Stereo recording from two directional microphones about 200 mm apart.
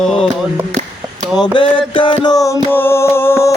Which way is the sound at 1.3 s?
25° left (ahead or behind).